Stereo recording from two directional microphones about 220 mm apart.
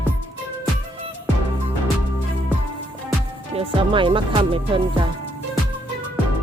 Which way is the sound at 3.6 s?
25° right (ahead or behind).